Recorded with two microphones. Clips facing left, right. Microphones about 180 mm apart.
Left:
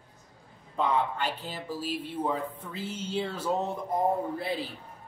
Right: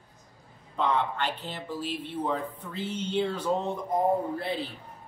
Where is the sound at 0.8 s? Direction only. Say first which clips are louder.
Even; 10° left (ahead or behind).